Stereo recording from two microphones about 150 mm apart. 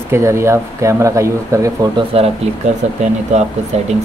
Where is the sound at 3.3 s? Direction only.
50° right (ahead or behind).